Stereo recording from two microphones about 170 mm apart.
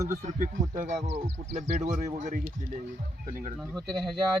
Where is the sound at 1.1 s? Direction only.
40° right (ahead or behind).